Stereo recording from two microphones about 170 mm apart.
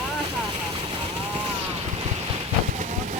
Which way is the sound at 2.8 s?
45° right (ahead or behind).